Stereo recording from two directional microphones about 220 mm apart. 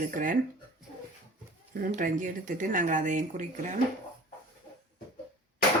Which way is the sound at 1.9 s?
35° right (ahead or behind).